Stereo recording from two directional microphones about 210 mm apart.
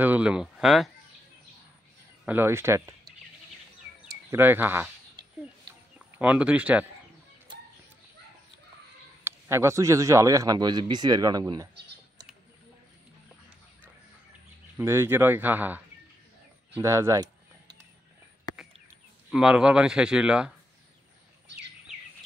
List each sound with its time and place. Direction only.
0.0 s a man's voice: 5° right (ahead or behind)
2.2 s a man's voice: 10° right (ahead or behind)
4.1 s a sound: 10° right (ahead or behind)
5.9 s speech: 5° right (ahead or behind)
9.2 s a man's voice: 10° right (ahead or behind)
14.8 s a man's voice: 10° right (ahead or behind)
16.7 s a sound: 10° right (ahead or behind)
19.3 s a man's voice: 5° right (ahead or behind)